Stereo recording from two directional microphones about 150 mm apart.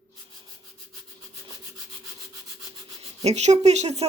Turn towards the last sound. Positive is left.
turn(degrees=-45)  # may be behind; listen again after turning